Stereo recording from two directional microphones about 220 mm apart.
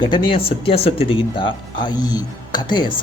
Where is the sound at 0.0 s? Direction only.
20° left (ahead or behind).